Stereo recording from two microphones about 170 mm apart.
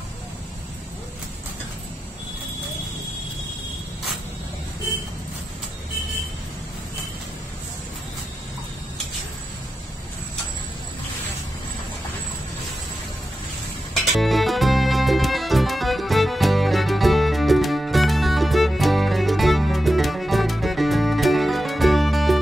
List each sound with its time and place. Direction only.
14.1 s music: centre (ahead or behind)